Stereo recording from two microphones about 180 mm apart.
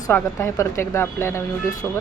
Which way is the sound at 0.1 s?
15° left (ahead or behind).